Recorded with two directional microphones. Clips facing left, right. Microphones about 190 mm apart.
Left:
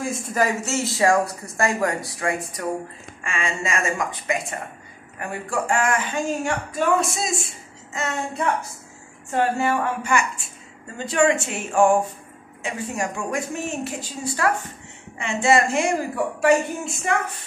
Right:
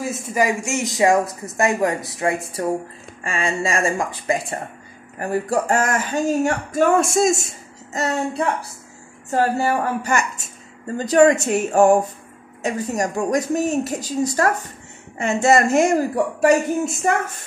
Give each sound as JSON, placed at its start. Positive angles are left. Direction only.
{"t": 0.3, "sound": "a woman's voice", "side_deg": -10}